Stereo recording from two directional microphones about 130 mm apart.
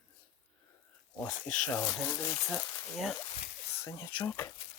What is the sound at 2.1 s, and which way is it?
Speech, 25° left (ahead or behind).